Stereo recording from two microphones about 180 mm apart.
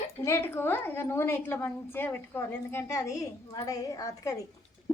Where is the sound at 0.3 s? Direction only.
15° left (ahead or behind).